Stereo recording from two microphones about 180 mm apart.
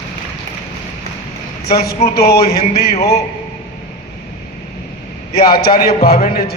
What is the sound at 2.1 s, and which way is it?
Speech, 60° left (ahead or behind).